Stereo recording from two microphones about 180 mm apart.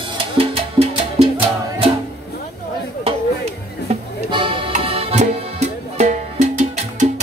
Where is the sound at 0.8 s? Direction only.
25° right (ahead or behind).